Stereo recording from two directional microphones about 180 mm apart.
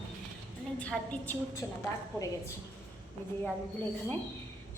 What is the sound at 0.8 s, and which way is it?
Speech, 5° left (ahead or behind).